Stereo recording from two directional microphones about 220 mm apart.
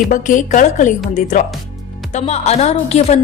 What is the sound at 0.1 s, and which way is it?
A woman's voice, 35° left (ahead or behind).